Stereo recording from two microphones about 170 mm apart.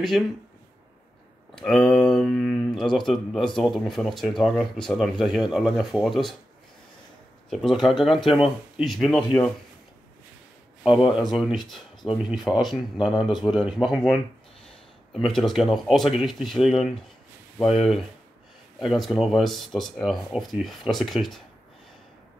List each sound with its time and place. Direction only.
1.5 s speech: 5° left (ahead or behind)
7.4 s speech: centre (ahead or behind)
10.9 s speech: 30° left (ahead or behind)
11.4 s speech: centre (ahead or behind)
13.3 s speech: 25° left (ahead or behind)
13.7 s speech: 5° right (ahead or behind)